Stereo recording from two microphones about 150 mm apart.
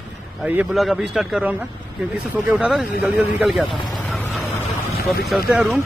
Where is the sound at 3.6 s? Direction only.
30° left (ahead or behind).